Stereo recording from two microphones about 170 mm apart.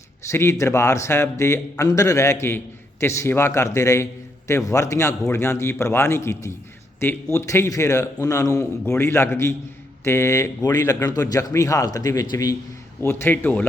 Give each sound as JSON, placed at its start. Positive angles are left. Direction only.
{"t": 0.3, "sound": "a man's voice", "side_deg": 15}